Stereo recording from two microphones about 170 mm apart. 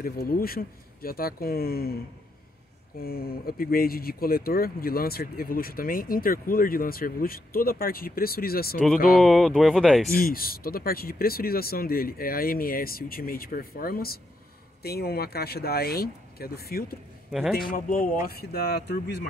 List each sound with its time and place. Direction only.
0.0 s speech: 60° left (ahead or behind)
3.0 s speech: 65° left (ahead or behind)
9.2 s speech: centre (ahead or behind)
10.1 s speech: 60° left (ahead or behind)
17.3 s a man's voice: centre (ahead or behind)
17.6 s speech: 55° left (ahead or behind); by 19.2 s 75° left (ahead or behind)